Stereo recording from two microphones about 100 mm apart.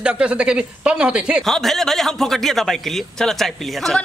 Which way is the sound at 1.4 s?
Centre (ahead or behind).